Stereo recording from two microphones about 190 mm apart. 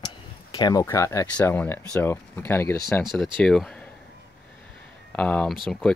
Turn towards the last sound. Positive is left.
turn(degrees=0)  # may be behind; listen again after turning